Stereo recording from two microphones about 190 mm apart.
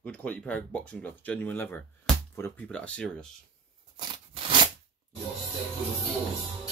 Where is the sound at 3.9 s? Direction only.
25° right (ahead or behind).